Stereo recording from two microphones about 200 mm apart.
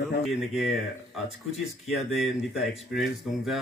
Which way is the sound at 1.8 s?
Centre (ahead or behind).